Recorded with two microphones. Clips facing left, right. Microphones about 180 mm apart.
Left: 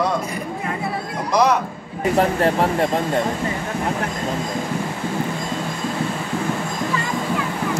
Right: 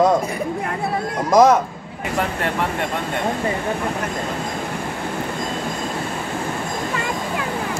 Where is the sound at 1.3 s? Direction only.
45° right (ahead or behind).